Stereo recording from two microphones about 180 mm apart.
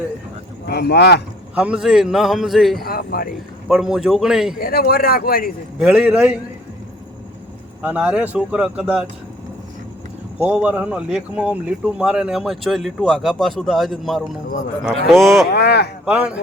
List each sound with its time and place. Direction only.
0.7 s speech: 65° left (ahead or behind)
1.5 s speech: 5° right (ahead or behind)
2.8 s speech: 55° left (ahead or behind)
3.7 s speech: 5° right (ahead or behind)
4.5 s speech: 55° left (ahead or behind)
5.8 s speech: 5° right (ahead or behind)
7.8 s speech: 5° right (ahead or behind)
10.4 s speech: 5° right (ahead or behind)
15.4 s speech: 65° left (ahead or behind)
16.0 s a man's voice: 5° right (ahead or behind)